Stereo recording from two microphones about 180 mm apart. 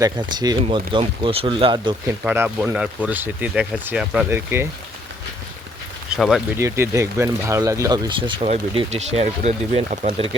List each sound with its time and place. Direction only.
0.0 s speech: 20° right (ahead or behind)
2.2 s speech: 10° right (ahead or behind)
6.1 s speech: centre (ahead or behind)
6.6 s speech: 15° right (ahead or behind)
8.4 s speech: 40° right (ahead or behind)